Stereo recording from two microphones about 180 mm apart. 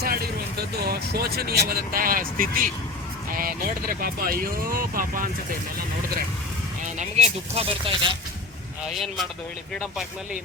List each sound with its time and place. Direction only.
0.0 s speech: 55° right (ahead or behind)
6.8 s speech: 40° right (ahead or behind)
8.9 s speech: centre (ahead or behind)